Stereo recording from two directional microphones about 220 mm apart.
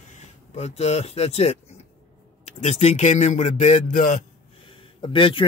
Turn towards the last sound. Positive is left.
turn(degrees=20)  # may be behind; listen again after turning